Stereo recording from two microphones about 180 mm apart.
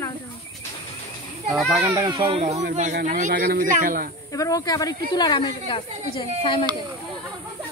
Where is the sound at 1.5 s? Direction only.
Centre (ahead or behind).